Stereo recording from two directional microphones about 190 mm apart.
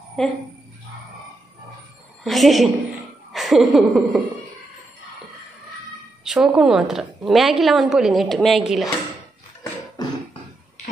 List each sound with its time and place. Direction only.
0.2 s a woman's voice: centre (ahead or behind)
2.2 s a woman's voice: centre (ahead or behind)
6.2 s a woman's voice: 5° right (ahead or behind)